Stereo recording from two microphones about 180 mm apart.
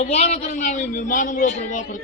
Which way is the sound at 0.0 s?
35° left (ahead or behind).